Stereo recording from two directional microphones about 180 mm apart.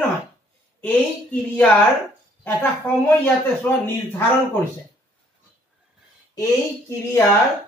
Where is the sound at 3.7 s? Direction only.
10° left (ahead or behind).